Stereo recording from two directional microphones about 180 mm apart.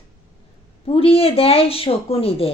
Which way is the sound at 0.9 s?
30° left (ahead or behind).